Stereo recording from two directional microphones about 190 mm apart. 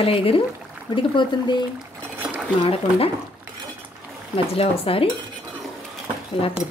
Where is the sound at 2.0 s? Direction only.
5° right (ahead or behind).